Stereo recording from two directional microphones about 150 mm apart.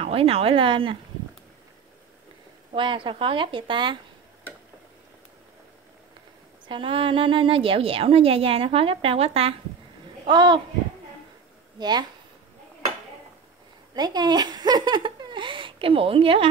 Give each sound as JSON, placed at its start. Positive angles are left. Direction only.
{"t": 0.0, "sound": "a woman's voice", "side_deg": -40}
{"t": 2.7, "sound": "a woman's voice", "side_deg": -35}
{"t": 6.7, "sound": "a woman's voice", "side_deg": -35}
{"t": 11.8, "sound": "speech", "side_deg": -30}
{"t": 13.9, "sound": "speech", "side_deg": -25}